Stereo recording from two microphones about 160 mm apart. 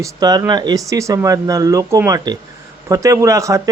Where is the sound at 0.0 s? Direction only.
25° right (ahead or behind).